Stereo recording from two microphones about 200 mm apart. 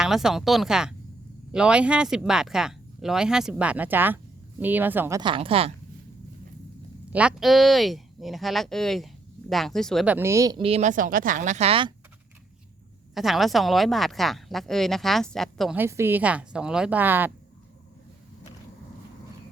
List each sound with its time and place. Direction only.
0.0 s speech: centre (ahead or behind)
5.2 s speech: 25° right (ahead or behind)
7.1 s speech: 5° right (ahead or behind)
10.2 s speech: 15° right (ahead or behind); by 11.9 s 30° right (ahead or behind)
13.1 s speech: centre (ahead or behind)
15.8 s a woman's voice: 10° right (ahead or behind)